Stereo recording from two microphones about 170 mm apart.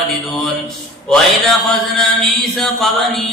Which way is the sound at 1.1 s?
Centre (ahead or behind).